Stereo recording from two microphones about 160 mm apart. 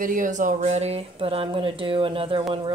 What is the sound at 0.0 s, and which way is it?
Speech, 55° right (ahead or behind).